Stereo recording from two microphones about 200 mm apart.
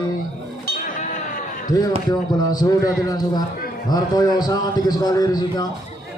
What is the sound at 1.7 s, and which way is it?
A man's voice, 20° left (ahead or behind).